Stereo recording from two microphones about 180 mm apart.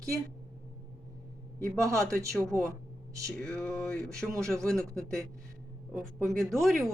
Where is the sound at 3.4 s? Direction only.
5° left (ahead or behind).